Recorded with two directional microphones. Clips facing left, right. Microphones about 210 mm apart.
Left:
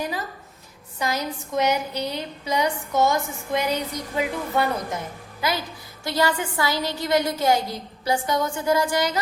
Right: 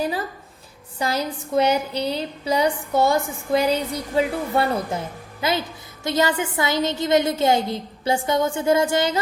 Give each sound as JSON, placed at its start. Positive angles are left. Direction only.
{"t": 0.9, "sound": "a woman's voice", "side_deg": -30}